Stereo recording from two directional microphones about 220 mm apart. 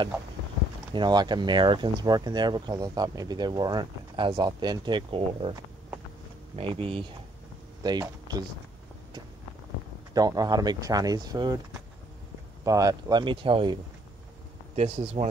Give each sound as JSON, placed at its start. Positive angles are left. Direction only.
{"t": 0.9, "sound": "speech", "side_deg": -20}
{"t": 10.1, "sound": "speech", "side_deg": -15}
{"t": 12.6, "sound": "speech", "side_deg": -15}
{"t": 14.8, "sound": "speech", "side_deg": -30}